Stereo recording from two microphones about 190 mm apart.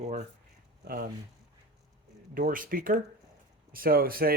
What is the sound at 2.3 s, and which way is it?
Speech, 45° right (ahead or behind).